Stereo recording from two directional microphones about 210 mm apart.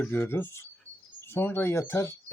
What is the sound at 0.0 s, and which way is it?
Speech, 10° left (ahead or behind).